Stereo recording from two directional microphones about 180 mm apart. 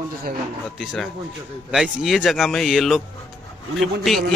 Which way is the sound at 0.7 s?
5° left (ahead or behind).